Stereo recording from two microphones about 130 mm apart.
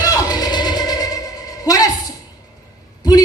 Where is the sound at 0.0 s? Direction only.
30° left (ahead or behind).